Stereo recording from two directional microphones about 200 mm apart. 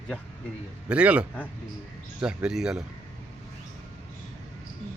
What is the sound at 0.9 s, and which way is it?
A man's voice, 5° right (ahead or behind).